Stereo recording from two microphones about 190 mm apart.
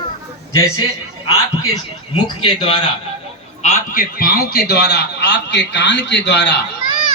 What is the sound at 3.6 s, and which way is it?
Speech, 35° left (ahead or behind).